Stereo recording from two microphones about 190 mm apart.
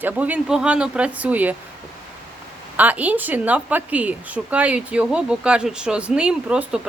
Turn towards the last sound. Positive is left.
turn(degrees=-5)  # may be behind; listen again after turning